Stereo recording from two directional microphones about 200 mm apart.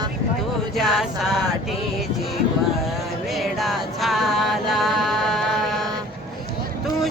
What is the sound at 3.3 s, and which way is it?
Music, centre (ahead or behind).